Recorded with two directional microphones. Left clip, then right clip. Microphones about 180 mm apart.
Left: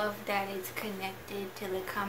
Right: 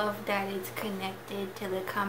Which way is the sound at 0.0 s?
15° right (ahead or behind).